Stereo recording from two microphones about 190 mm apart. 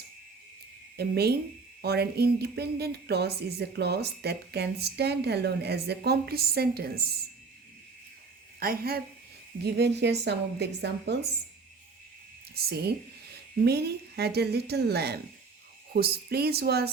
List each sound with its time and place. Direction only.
0.9 s speech: 60° right (ahead or behind)
8.5 s speech: 50° right (ahead or behind)
12.5 s speech: 55° right (ahead or behind)